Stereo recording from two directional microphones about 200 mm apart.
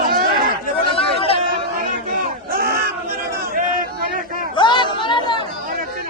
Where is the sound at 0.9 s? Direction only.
30° left (ahead or behind).